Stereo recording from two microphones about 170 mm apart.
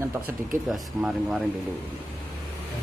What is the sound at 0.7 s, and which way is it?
Speech, centre (ahead or behind).